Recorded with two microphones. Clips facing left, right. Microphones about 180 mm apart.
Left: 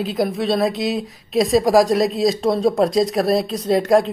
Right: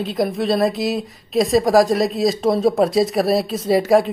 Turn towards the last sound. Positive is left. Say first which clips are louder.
# right 1 dB
turn(degrees=-5)  # may be behind; listen again after turning